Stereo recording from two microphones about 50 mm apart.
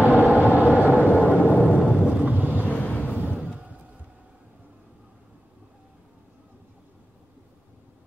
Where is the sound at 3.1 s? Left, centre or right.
Right.